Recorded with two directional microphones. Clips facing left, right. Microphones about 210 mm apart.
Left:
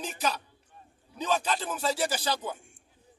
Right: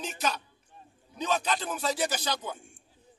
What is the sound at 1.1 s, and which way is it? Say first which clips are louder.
Speech: even; 5° left (ahead or behind).